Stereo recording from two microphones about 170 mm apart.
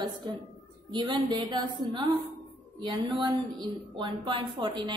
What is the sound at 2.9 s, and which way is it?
A woman's voice, 25° right (ahead or behind).